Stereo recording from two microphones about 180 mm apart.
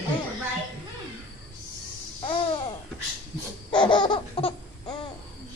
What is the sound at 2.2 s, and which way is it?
Babbling, 30° left (ahead or behind).